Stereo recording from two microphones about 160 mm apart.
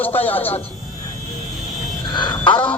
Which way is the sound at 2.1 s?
30° left (ahead or behind).